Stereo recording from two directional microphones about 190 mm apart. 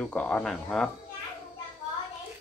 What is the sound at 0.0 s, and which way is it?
Speech, 5° left (ahead or behind).